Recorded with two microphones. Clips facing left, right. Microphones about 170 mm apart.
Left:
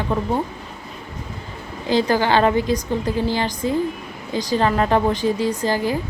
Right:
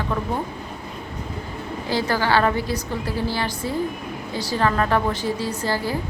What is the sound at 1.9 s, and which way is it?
A woman's voice, 20° left (ahead or behind).